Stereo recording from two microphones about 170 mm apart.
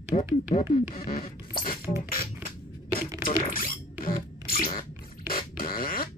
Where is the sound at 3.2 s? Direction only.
55° left (ahead or behind).